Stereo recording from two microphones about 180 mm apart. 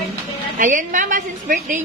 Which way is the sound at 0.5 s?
45° right (ahead or behind).